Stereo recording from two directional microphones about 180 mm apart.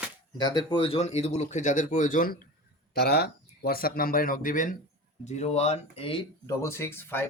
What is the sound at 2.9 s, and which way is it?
Speech, 60° left (ahead or behind).